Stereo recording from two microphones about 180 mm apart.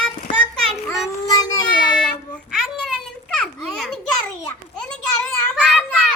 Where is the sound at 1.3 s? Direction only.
20° left (ahead or behind).